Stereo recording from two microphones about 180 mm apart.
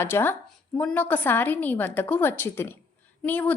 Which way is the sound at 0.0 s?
10° left (ahead or behind).